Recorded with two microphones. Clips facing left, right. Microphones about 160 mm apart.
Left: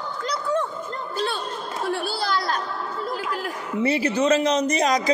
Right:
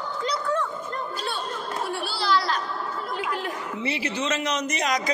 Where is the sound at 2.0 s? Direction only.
50° left (ahead or behind).